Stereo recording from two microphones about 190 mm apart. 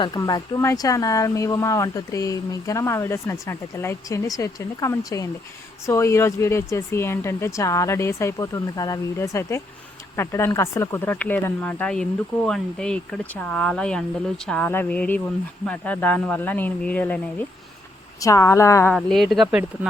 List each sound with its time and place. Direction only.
0.0 s speech: 20° left (ahead or behind)
18.2 s speech: 15° left (ahead or behind)
18.9 s speech: centre (ahead or behind)